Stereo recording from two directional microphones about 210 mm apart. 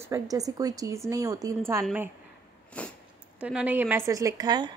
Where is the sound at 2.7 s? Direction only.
5° left (ahead or behind).